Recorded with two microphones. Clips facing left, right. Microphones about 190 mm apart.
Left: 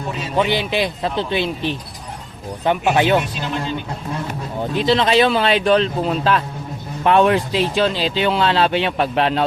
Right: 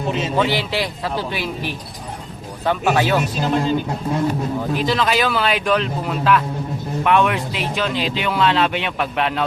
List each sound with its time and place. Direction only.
0.3 s speech: 20° left (ahead or behind)
3.4 s speech: 40° right (ahead or behind)
4.7 s speech: 25° left (ahead or behind)